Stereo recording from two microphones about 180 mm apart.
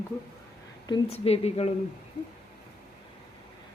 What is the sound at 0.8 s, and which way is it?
Speech, 30° left (ahead or behind).